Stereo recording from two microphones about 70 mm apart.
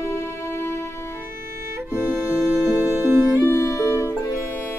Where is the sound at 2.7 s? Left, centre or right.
Right.